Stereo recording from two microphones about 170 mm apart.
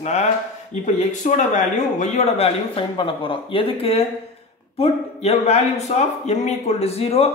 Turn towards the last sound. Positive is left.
turn(degrees=35)  # may be behind; listen again after turning